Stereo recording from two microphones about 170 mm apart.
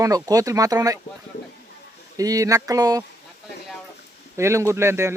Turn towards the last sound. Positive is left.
turn(degrees=-15)  # may be behind; listen again after turning